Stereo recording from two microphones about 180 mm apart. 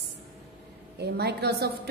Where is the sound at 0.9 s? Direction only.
65° right (ahead or behind).